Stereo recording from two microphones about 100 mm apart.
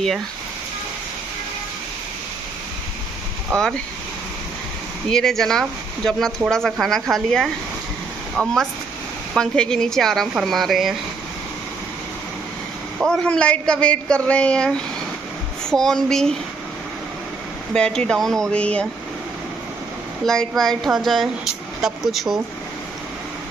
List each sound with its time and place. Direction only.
3.5 s a man's voice: 5° left (ahead or behind)
5.1 s speech: 5° left (ahead or behind)
13.0 s a man's voice: 10° left (ahead or behind)
17.7 s a man's voice: 10° left (ahead or behind)
20.2 s speech: 5° left (ahead or behind)